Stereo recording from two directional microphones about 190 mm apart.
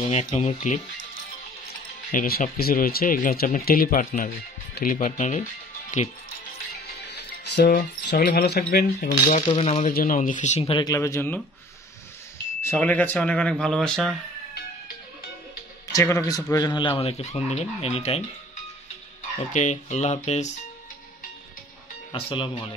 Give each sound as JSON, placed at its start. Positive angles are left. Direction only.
{"t": 0.1, "sound": "speech", "side_deg": 35}
{"t": 2.1, "sound": "speech", "side_deg": 50}
{"t": 7.1, "sound": "music", "side_deg": 65}
{"t": 8.3, "sound": "speech", "side_deg": 55}
{"t": 9.5, "sound": "speech", "side_deg": 30}
{"t": 9.8, "sound": "speech", "side_deg": 45}
{"t": 12.6, "sound": "speech", "side_deg": 10}
{"t": 15.9, "sound": "speech", "side_deg": 15}
{"t": 19.5, "sound": "speech", "side_deg": 40}
{"t": 22.1, "sound": "speech", "side_deg": 30}